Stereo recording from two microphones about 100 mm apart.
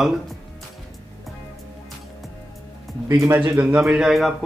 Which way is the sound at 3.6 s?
15° right (ahead or behind).